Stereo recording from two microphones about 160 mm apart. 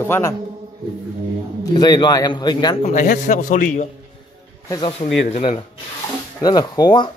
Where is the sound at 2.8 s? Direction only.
50° left (ahead or behind).